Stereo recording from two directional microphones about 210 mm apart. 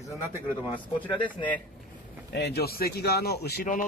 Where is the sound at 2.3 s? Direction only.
50° left (ahead or behind).